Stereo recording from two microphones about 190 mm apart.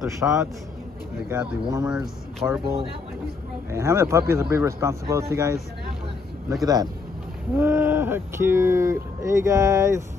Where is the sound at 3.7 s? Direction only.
15° right (ahead or behind).